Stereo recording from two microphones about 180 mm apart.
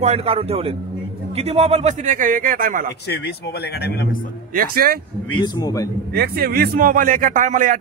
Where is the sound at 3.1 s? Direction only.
65° left (ahead or behind).